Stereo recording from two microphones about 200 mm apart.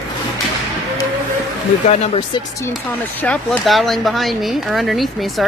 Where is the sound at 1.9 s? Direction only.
30° left (ahead or behind).